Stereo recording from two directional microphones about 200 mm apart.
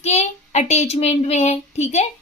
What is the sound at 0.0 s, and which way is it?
A child's voice, 35° left (ahead or behind).